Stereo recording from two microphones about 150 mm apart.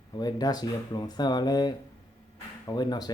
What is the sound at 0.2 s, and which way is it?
Speech, 25° left (ahead or behind).